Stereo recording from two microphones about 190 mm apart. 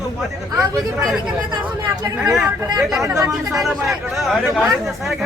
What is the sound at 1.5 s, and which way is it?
Speech, 20° right (ahead or behind).